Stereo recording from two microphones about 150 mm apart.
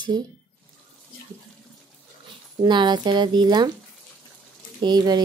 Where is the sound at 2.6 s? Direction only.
30° right (ahead or behind).